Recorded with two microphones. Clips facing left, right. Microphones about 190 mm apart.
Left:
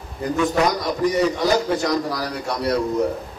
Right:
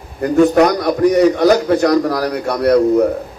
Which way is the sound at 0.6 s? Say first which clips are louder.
Right 8 dB; 60° right (ahead or behind).